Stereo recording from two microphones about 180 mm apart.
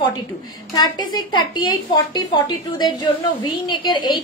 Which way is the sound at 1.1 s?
25° left (ahead or behind).